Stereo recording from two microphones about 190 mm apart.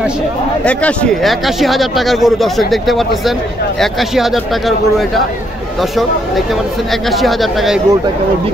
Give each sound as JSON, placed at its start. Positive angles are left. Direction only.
{"t": 0.7, "sound": "speech", "side_deg": 5}